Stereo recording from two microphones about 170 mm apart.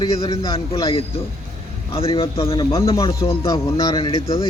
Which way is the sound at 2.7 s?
20° left (ahead or behind).